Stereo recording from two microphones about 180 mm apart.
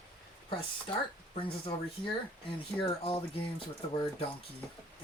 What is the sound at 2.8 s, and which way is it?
Speech, 30° left (ahead or behind).